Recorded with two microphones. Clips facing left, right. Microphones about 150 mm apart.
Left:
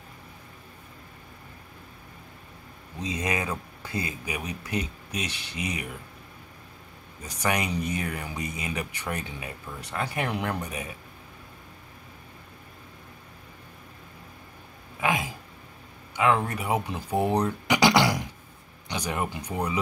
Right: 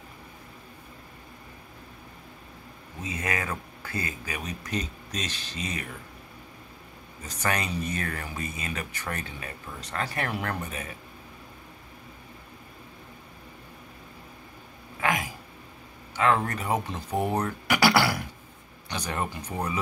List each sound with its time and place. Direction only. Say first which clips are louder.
3.0 s speech: left 2 dB; 15° left (ahead or behind)
7.2 s speech: left 2 dB; 15° left (ahead or behind)
15.0 s a sound: left 1 dB; 15° left (ahead or behind)
16.2 s speech: even; 15° left (ahead or behind)